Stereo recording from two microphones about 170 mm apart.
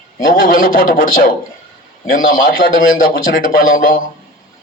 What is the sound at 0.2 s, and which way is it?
A man's voice, 55° left (ahead or behind).